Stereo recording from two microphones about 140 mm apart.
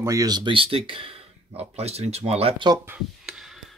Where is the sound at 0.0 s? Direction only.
25° right (ahead or behind); by 2.5 s 45° right (ahead or behind).